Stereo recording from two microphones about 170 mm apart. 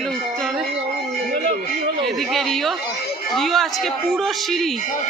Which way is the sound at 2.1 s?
Centre (ahead or behind).